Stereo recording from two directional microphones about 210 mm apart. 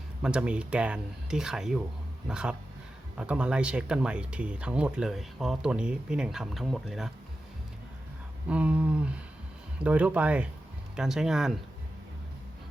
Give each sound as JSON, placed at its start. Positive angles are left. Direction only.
{"t": 0.2, "sound": "speech", "side_deg": -5}
{"t": 8.4, "sound": "speech", "side_deg": -5}